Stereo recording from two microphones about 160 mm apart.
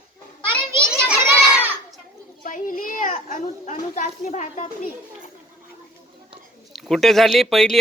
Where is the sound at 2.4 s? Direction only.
55° left (ahead or behind).